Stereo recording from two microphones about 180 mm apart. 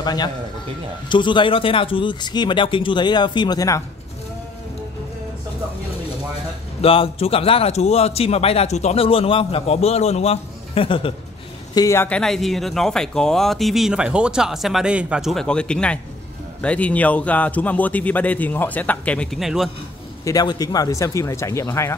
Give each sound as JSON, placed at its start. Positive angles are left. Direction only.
{"t": 0.0, "sound": "a man's voice", "side_deg": 25}
{"t": 6.8, "sound": "a man's voice", "side_deg": 30}
{"t": 11.7, "sound": "speech", "side_deg": 15}
{"t": 20.2, "sound": "speech", "side_deg": 20}